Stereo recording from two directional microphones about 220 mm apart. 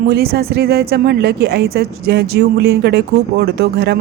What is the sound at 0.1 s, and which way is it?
A woman's voice, 45° right (ahead or behind).